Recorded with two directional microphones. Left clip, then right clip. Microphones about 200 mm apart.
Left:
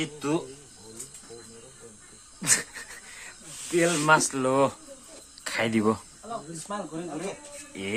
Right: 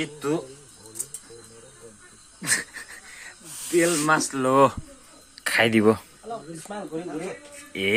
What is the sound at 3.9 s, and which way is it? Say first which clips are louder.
Speech: left 1 dB; centre (ahead or behind).